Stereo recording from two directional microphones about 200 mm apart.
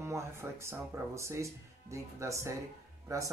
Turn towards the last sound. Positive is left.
turn(degrees=-15)  # may be behind; listen again after turning